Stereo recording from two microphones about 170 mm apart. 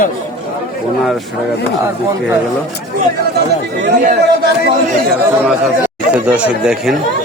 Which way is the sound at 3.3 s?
80° right.